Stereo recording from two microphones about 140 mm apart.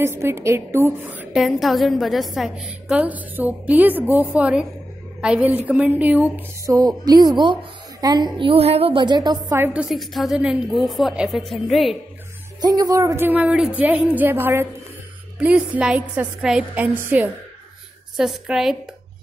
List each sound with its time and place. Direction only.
0.0 s a woman's voice: 15° right (ahead or behind)
1.4 s a woman's voice: centre (ahead or behind)
6.3 s a woman's voice: 25° right (ahead or behind)
9.8 s a woman's voice: centre (ahead or behind)
12.6 s a woman's voice: 25° right (ahead or behind)
18.1 s a woman's voice: 5° right (ahead or behind)